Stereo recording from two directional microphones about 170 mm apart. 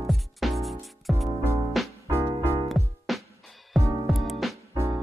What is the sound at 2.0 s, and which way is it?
Music, 20° right (ahead or behind).